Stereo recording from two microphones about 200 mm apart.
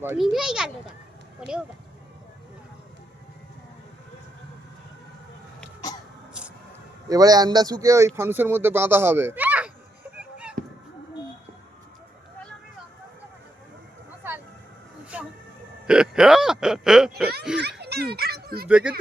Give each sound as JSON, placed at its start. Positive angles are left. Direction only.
{"t": 0.2, "sound": "a child's voice", "side_deg": 0}
{"t": 7.1, "sound": "speech", "side_deg": -20}
{"t": 10.2, "sound": "a sound", "side_deg": -5}
{"t": 15.1, "sound": "music", "side_deg": -5}
{"t": 15.9, "sound": "a sound", "side_deg": -5}
{"t": 17.6, "sound": "a child's voice", "side_deg": -55}
{"t": 18.7, "sound": "speech", "side_deg": -5}